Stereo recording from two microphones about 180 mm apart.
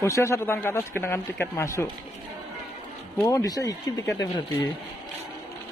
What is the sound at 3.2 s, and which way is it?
Speech, 20° left (ahead or behind).